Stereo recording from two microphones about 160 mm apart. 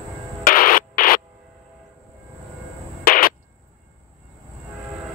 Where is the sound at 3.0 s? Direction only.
60° left (ahead or behind).